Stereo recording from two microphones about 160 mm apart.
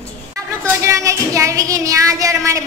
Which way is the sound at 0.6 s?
20° right (ahead or behind).